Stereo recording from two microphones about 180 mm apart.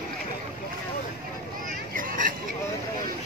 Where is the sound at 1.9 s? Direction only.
50° right (ahead or behind).